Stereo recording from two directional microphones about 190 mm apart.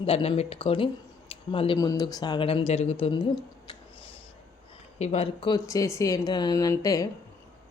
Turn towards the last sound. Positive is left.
turn(degrees=20)  # may be behind; listen again after turning